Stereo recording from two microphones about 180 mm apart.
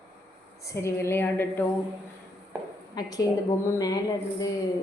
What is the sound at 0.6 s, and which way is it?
A woman's voice, 15° left (ahead or behind).